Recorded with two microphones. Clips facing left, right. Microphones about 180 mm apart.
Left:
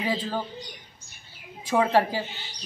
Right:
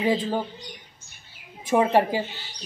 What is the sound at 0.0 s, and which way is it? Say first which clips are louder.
Speech: right 5 dB; 15° right (ahead or behind).